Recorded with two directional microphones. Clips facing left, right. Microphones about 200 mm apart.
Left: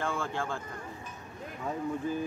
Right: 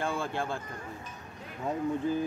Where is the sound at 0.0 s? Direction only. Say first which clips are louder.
Right 1 dB; 15° right (ahead or behind).